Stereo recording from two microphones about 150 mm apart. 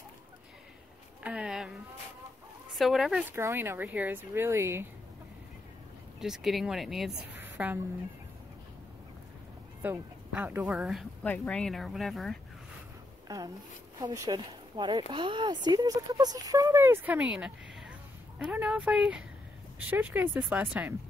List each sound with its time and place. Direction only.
1.2 s a sound: 5° right (ahead or behind)
2.7 s speech: centre (ahead or behind); by 4.8 s 15° right (ahead or behind)
6.1 s speech: 5° right (ahead or behind)
7.3 s a woman's voice: 10° right (ahead or behind)
9.8 s speech: 10° right (ahead or behind)
11.2 s speech: 10° left (ahead or behind)
13.3 s speech: 20° right (ahead or behind)